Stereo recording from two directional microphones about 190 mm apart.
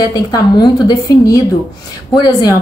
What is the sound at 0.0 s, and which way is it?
A woman's voice, 20° left (ahead or behind).